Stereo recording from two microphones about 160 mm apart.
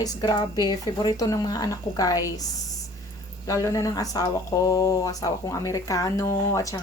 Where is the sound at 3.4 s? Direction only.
20° left (ahead or behind).